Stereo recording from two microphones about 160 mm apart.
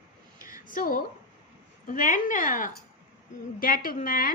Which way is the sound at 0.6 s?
60° left (ahead or behind).